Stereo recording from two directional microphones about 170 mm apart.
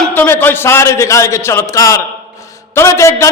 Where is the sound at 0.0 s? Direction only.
10° left (ahead or behind).